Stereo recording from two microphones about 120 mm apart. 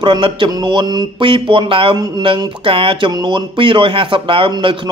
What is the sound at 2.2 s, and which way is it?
Speech, 45° right (ahead or behind).